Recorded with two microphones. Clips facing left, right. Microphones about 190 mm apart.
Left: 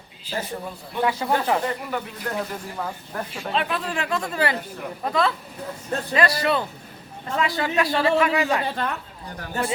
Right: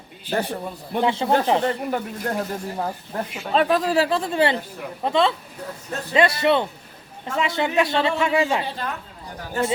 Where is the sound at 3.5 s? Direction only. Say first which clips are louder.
Right 8 dB; 40° right (ahead or behind).